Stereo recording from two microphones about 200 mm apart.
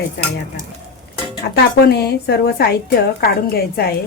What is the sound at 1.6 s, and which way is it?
Speech, 55° left (ahead or behind).